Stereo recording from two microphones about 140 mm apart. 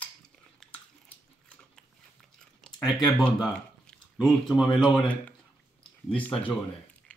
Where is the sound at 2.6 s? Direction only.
5° left (ahead or behind).